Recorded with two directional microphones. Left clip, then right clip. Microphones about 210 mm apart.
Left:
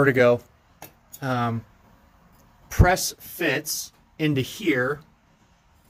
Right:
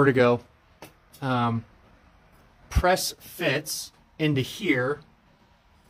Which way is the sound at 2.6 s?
5° right (ahead or behind).